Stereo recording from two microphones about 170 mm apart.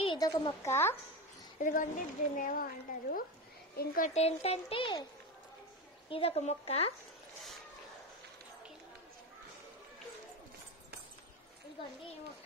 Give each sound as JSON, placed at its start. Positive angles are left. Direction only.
{"t": 0.0, "sound": "a woman's voice", "side_deg": 25}
{"t": 1.6, "sound": "a woman's voice", "side_deg": 50}
{"t": 4.1, "sound": "speech", "side_deg": 40}
{"t": 6.0, "sound": "speech", "side_deg": 35}